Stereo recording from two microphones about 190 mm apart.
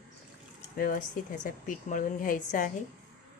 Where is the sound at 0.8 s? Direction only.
50° left (ahead or behind).